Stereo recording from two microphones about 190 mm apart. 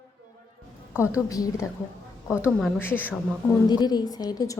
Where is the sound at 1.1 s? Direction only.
15° left (ahead or behind).